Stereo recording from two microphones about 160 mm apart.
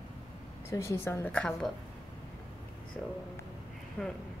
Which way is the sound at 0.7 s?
20° left (ahead or behind).